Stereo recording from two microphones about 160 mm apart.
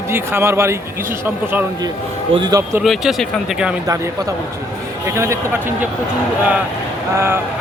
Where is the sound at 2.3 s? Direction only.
25° right (ahead or behind).